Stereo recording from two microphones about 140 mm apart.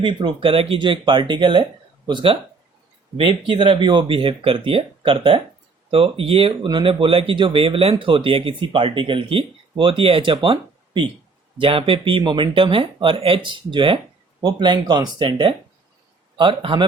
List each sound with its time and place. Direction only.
0.0 s speech: 35° right (ahead or behind)